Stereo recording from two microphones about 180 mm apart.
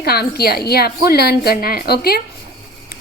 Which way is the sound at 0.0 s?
60° left (ahead or behind).